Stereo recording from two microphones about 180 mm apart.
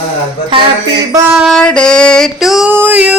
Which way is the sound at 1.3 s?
Centre (ahead or behind).